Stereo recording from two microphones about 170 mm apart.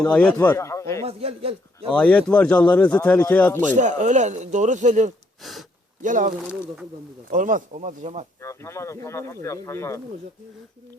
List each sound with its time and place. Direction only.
0.0 s speech: 5° left (ahead or behind)
1.0 s a man's voice: 35° right (ahead or behind)
1.9 s speech: 5° left (ahead or behind)
3.7 s speech: 45° right (ahead or behind)
5.4 s speech: centre (ahead or behind)
6.0 s speech: 50° right (ahead or behind)
8.4 s speech: 15° left (ahead or behind)